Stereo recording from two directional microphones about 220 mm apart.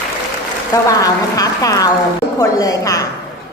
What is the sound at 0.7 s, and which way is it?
Speech, 15° left (ahead or behind).